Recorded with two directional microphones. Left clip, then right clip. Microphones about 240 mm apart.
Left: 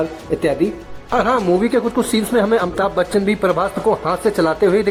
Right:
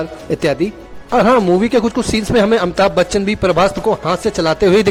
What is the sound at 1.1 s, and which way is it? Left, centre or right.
Speech, right.